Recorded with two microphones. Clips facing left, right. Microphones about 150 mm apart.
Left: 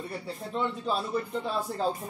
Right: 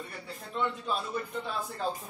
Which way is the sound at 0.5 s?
35° left (ahead or behind).